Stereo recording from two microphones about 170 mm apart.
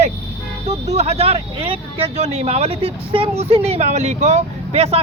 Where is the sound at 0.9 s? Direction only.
40° right (ahead or behind).